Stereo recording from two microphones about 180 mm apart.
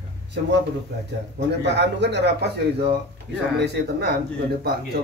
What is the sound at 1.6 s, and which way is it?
A man's voice, 75° right (ahead or behind).